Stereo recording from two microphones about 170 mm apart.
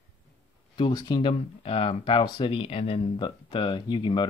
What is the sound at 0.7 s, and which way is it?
Speech, 30° left (ahead or behind).